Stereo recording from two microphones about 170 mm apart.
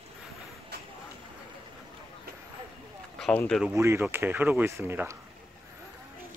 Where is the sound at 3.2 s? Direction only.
5° left (ahead or behind).